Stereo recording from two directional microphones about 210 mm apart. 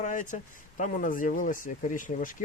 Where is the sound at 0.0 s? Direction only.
40° left (ahead or behind).